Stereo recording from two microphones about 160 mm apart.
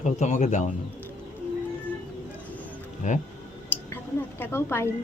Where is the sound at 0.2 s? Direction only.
50° left (ahead or behind).